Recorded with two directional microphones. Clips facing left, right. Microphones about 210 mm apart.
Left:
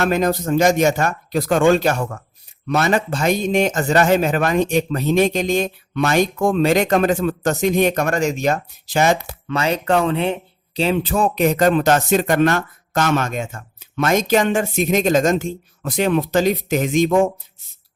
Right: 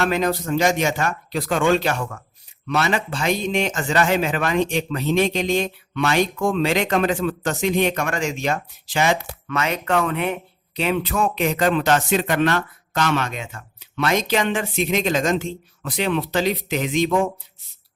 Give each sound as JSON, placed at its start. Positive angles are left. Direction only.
{"t": 0.0, "sound": "a man's voice", "side_deg": 45}
{"t": 9.5, "sound": "a man's voice", "side_deg": 30}